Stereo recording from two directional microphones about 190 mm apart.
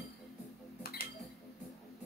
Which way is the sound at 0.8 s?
55° left (ahead or behind).